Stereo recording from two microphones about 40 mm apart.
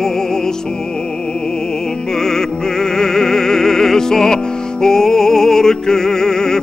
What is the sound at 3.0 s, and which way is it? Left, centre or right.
Music, centre.